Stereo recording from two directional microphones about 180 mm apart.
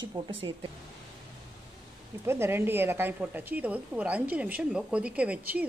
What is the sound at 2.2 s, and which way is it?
A woman's voice, 15° right (ahead or behind).